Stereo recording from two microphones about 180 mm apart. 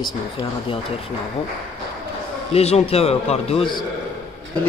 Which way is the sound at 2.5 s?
35° left (ahead or behind).